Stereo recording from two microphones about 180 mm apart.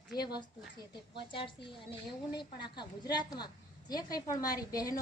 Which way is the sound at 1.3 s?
30° left (ahead or behind).